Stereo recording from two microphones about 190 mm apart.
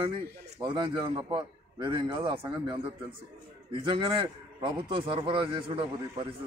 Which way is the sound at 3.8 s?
25° right (ahead or behind).